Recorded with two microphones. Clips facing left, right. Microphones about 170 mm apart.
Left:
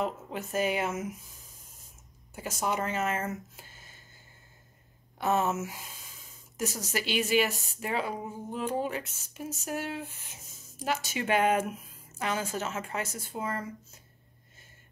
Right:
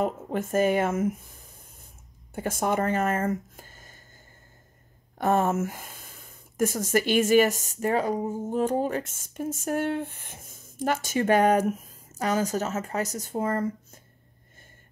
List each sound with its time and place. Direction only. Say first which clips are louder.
0.0 s speech: right 5 dB; 50° right (ahead or behind)
5.2 s speech: right 5 dB; 50° right (ahead or behind)